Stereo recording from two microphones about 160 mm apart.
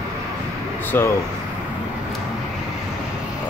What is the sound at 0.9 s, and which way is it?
Speech, 15° left (ahead or behind).